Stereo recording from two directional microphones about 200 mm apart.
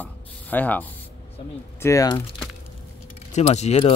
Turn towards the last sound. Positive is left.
turn(degrees=35)  # may be behind; listen again after turning